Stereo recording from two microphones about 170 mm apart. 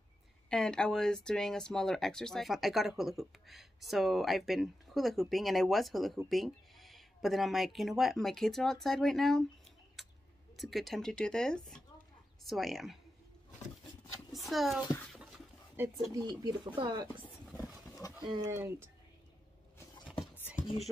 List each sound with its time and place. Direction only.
0.5 s speech: 5° left (ahead or behind)
10.6 s speech: centre (ahead or behind)
14.5 s speech: centre (ahead or behind)
15.8 s speech: 15° right (ahead or behind)
16.2 s speech: 25° right (ahead or behind)
17.5 s a sound: centre (ahead or behind)
18.2 s speech: 30° right (ahead or behind)
20.6 s a sound: 50° left (ahead or behind)